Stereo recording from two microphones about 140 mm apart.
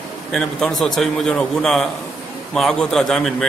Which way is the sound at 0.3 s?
5° left (ahead or behind).